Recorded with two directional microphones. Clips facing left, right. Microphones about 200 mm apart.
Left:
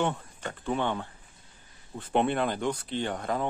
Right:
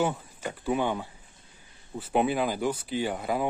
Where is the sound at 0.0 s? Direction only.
5° right (ahead or behind).